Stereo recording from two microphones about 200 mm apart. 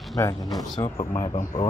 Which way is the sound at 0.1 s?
20° left (ahead or behind).